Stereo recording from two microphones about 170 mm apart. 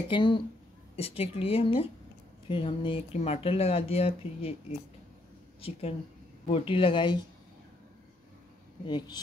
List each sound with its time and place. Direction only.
0.1 s speech: 30° left (ahead or behind)
5.6 s speech: 35° left (ahead or behind)
8.8 s speech: 25° left (ahead or behind)